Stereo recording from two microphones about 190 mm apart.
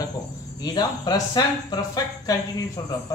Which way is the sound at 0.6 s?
20° left (ahead or behind).